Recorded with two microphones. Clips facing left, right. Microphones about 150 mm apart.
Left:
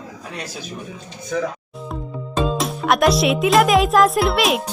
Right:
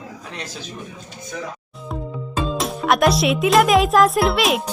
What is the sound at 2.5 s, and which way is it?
Speech, centre (ahead or behind).